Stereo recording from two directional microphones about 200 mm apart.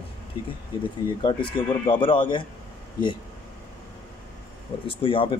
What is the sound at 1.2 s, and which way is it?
Speech, 25° left (ahead or behind).